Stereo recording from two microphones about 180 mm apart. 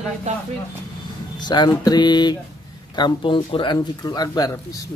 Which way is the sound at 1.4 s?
25° left (ahead or behind).